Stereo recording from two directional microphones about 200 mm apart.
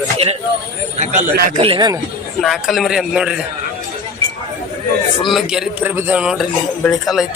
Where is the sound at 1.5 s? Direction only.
25° right (ahead or behind).